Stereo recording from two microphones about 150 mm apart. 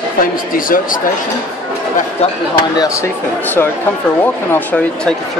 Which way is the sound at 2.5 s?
25° left (ahead or behind).